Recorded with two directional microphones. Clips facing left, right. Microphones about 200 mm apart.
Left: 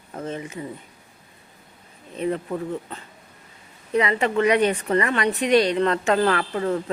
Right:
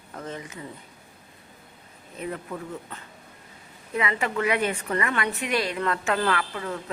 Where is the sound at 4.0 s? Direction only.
30° left (ahead or behind).